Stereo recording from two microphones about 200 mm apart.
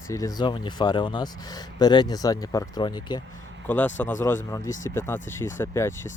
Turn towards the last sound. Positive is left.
turn(degrees=15)  # may be behind; listen again after turning